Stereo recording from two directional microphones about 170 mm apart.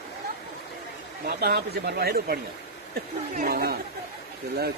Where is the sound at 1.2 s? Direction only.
70° right (ahead or behind).